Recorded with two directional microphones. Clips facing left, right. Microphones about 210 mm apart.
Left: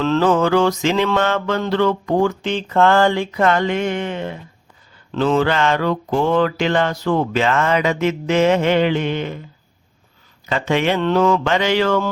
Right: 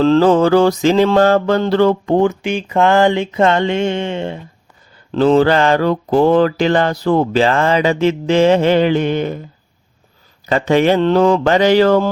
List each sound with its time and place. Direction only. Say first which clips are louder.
0.0 s mantra: right 5 dB; 35° right (ahead or behind)
2.1 s mantra: right 3 dB; 20° right (ahead or behind); by 9.4 s 45° right (ahead or behind)
10.4 s mantra: right 6 dB; 40° right (ahead or behind)